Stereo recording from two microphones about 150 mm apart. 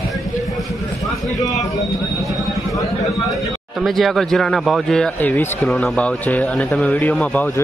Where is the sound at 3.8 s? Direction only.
Centre (ahead or behind).